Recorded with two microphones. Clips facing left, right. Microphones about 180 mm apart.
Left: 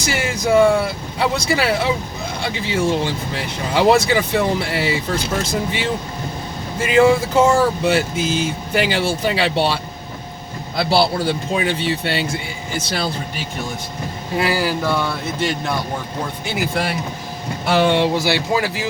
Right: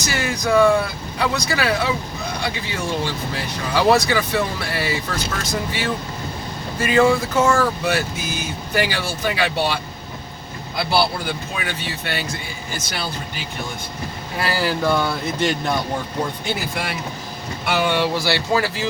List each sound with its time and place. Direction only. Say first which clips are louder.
0.0 s speech: left 2 dB; 25° left (ahead or behind)
10.9 s speech: left 4 dB; 25° left (ahead or behind)
14.3 s speech: left 4 dB; 15° left (ahead or behind)
14.8 s speech: right 1 dB; centre (ahead or behind)
17.7 s speech: left 4 dB; 25° left (ahead or behind)